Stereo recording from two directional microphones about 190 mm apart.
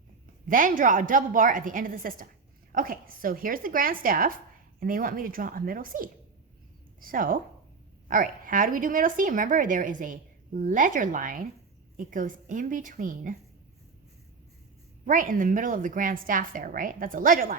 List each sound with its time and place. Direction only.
0.4 s speech: 45° right (ahead or behind)
15.0 s speech: 45° right (ahead or behind)